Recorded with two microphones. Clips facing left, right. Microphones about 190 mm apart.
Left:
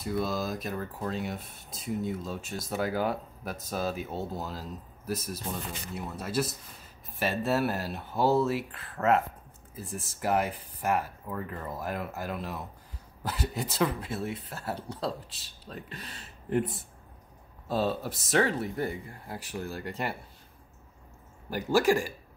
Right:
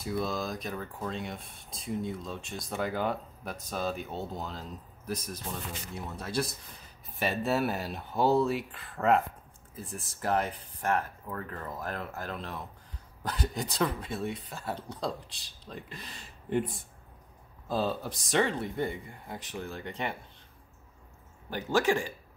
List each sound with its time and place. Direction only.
0.0 s speech: centre (ahead or behind)
21.5 s speech: 10° left (ahead or behind)